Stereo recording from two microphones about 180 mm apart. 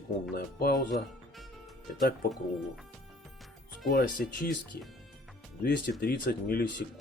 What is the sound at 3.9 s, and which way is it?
Speech, 55° left (ahead or behind).